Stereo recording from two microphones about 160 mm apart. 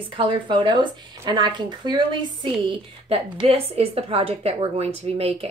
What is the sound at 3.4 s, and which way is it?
A woman's voice, 40° right (ahead or behind).